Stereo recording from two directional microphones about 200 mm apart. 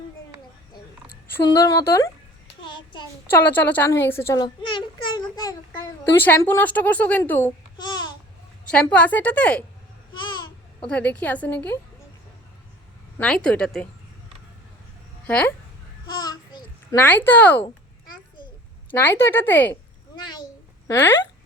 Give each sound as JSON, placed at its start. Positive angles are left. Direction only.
{"t": 1.5, "sound": "a woman's voice", "side_deg": 15}
{"t": 2.6, "sound": "a sound", "side_deg": 25}
{"t": 3.5, "sound": "a child's voice", "side_deg": 10}
{"t": 7.8, "sound": "babbling", "side_deg": 20}
{"t": 8.7, "sound": "a woman's voice", "side_deg": 5}
{"t": 10.8, "sound": "a woman's voice", "side_deg": 5}
{"t": 13.1, "sound": "speech", "side_deg": 5}
{"t": 15.3, "sound": "a woman's voice", "side_deg": 5}
{"t": 16.1, "sound": "babbling", "side_deg": 20}
{"t": 16.6, "sound": "speech", "side_deg": 10}
{"t": 18.9, "sound": "a woman's voice", "side_deg": 10}
{"t": 20.1, "sound": "a sound", "side_deg": 20}
{"t": 20.8, "sound": "speech", "side_deg": 10}